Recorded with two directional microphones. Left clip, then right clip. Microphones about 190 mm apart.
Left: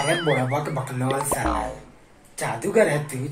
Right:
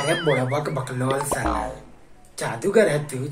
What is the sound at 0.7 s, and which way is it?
Speech, 15° right (ahead or behind).